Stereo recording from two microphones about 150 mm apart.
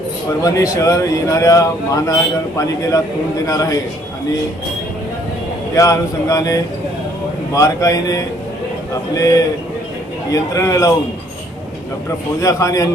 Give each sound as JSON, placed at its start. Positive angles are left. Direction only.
{"t": 0.4, "sound": "a man's voice", "side_deg": 20}
{"t": 3.4, "sound": "a man's voice", "side_deg": 25}
{"t": 5.7, "sound": "a man's voice", "side_deg": 20}
{"t": 12.4, "sound": "a man's voice", "side_deg": 20}